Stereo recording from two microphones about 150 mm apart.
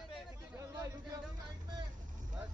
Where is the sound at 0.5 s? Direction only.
20° right (ahead or behind).